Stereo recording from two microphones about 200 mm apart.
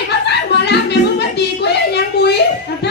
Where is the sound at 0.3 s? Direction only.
55° left (ahead or behind).